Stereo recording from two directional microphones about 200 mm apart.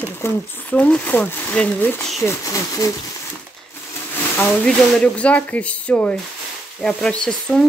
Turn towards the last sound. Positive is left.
turn(degrees=5)  # may be behind; listen again after turning